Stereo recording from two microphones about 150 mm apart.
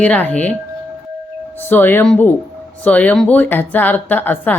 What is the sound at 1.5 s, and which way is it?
A woman's voice, 15° left (ahead or behind).